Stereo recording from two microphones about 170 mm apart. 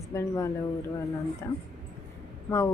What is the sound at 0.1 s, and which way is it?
Speech, 15° left (ahead or behind).